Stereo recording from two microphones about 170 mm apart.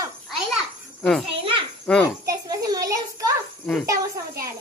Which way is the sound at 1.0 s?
5° left (ahead or behind).